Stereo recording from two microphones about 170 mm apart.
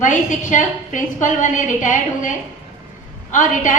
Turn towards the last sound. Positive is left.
turn(degrees=50)  # may be behind; listen again after turning